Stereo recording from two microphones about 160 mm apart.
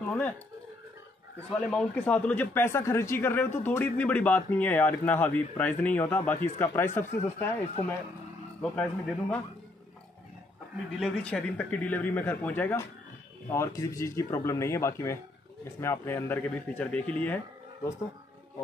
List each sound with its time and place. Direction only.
0.0 s a sound: 10° left (ahead or behind)
1.5 s speech: 5° left (ahead or behind)
8.6 s speech: 10° left (ahead or behind)
11.0 s speech: 5° left (ahead or behind)